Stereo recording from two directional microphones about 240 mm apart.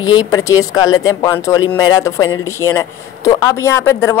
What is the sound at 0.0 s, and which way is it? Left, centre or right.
Speech, centre.